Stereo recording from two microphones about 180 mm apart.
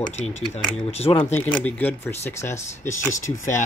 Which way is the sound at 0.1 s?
40° left (ahead or behind).